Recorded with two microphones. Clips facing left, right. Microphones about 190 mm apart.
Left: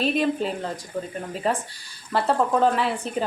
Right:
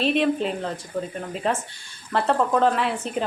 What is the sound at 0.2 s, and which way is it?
A woman's voice, centre (ahead or behind).